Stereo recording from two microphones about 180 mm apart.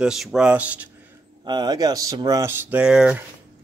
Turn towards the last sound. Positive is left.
turn(degrees=-5)  # may be behind; listen again after turning